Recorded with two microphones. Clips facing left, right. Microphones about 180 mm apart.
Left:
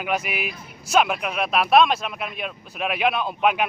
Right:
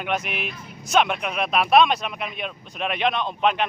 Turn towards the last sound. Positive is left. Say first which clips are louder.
# left 1 dB
turn(degrees=5)  # may be behind; listen again after turning